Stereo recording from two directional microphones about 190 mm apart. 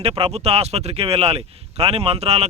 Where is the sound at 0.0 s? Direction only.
30° right (ahead or behind).